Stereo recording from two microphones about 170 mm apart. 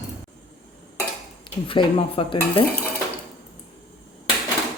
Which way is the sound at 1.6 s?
30° left (ahead or behind).